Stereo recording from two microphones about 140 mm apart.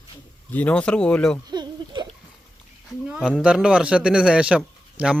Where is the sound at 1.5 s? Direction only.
30° right (ahead or behind).